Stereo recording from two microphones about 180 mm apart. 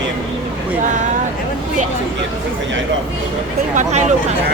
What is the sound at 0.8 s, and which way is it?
Speech, 45° right (ahead or behind).